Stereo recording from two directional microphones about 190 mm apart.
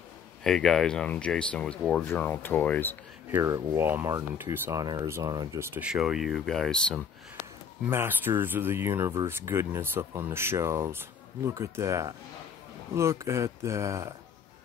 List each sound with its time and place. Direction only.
0.4 s speech: centre (ahead or behind)
3.3 s speech: 15° right (ahead or behind); by 7.0 s 5° left (ahead or behind)
7.8 s speech: 10° right (ahead or behind)